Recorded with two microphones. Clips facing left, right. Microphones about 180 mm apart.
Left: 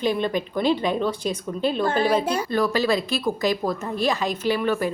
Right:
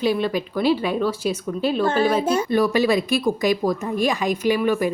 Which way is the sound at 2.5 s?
20° right (ahead or behind).